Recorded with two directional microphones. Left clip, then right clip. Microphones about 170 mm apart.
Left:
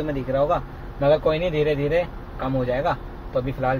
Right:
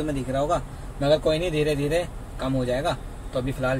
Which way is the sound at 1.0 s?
25° right (ahead or behind).